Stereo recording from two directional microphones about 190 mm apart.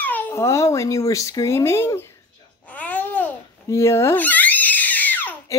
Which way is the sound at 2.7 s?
10° left (ahead or behind).